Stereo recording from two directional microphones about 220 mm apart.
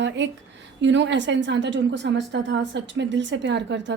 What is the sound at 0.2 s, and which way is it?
A woman's voice, 55° right (ahead or behind).